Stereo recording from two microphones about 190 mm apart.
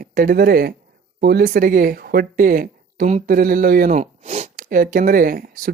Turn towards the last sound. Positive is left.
turn(degrees=-50)  # may be behind; listen again after turning